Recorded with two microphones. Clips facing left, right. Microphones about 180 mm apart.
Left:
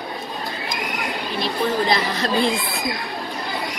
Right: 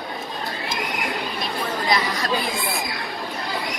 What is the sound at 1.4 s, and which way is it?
Chatter, 30° left (ahead or behind).